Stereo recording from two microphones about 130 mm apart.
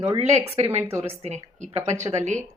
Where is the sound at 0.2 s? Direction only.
60° right (ahead or behind).